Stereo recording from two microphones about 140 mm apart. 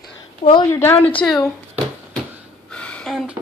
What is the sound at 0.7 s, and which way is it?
Speech, 15° left (ahead or behind).